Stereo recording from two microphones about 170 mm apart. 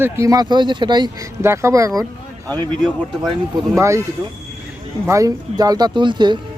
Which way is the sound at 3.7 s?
15° right (ahead or behind).